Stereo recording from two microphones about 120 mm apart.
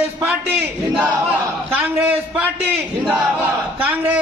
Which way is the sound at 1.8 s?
15° right (ahead or behind).